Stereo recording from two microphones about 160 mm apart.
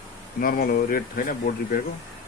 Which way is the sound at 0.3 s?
60° left (ahead or behind).